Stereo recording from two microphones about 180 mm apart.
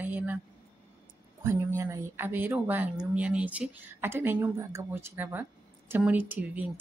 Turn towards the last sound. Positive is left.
turn(degrees=-10)  # may be behind; listen again after turning